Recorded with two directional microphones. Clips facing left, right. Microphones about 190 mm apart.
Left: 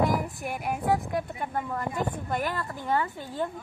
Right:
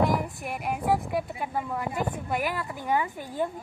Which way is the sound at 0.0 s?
Centre (ahead or behind).